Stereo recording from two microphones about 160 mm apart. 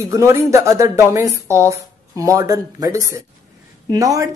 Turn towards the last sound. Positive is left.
turn(degrees=-20)  # may be behind; listen again after turning